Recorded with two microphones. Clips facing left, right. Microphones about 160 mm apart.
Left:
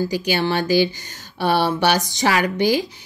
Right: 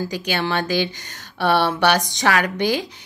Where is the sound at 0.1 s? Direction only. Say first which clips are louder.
Left 2 dB; 5° left (ahead or behind).